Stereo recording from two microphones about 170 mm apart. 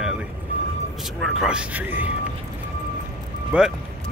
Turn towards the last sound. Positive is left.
turn(degrees=-10)  # may be behind; listen again after turning